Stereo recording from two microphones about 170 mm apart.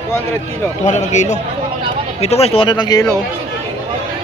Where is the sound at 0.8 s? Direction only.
45° left (ahead or behind); by 3.0 s 25° left (ahead or behind).